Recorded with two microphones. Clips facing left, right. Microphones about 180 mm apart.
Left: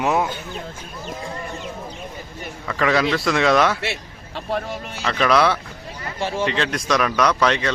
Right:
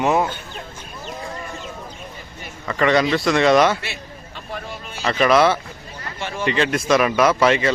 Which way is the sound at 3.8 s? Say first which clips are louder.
Left 5 dB; 70° left (ahead or behind).